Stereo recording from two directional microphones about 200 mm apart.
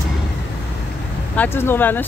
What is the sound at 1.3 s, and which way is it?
Speech, 10° left (ahead or behind).